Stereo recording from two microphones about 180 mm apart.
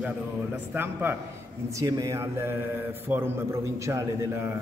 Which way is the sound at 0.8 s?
10° right (ahead or behind).